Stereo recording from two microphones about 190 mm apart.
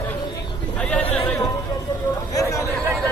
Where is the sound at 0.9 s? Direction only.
10° left (ahead or behind).